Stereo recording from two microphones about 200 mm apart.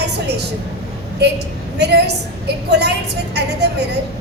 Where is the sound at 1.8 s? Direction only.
55° right (ahead or behind).